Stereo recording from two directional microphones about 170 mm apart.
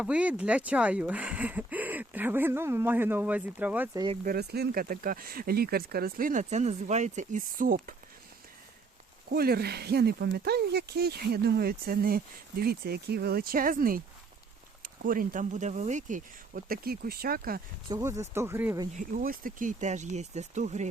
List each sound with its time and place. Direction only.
0.0 s speech: 5° right (ahead or behind)
4.2 s speech: 65° right (ahead or behind)
9.3 s speech: 65° right (ahead or behind)
17.8 s speech: 20° right (ahead or behind)
18.9 s speech: 50° right (ahead or behind)